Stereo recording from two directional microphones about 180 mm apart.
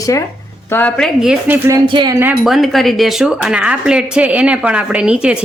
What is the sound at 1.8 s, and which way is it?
Speech, 25° right (ahead or behind).